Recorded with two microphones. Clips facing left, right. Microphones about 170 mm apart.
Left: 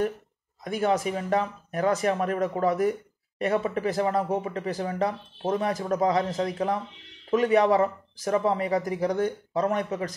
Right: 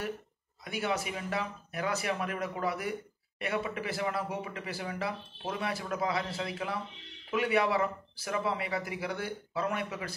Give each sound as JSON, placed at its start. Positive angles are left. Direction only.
{"t": 0.7, "sound": "speech", "side_deg": 45}